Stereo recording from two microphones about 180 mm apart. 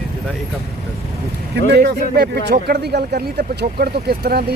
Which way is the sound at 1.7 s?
70° right (ahead or behind).